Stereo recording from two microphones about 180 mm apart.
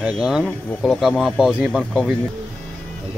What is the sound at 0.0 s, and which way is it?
Speech, 5° right (ahead or behind).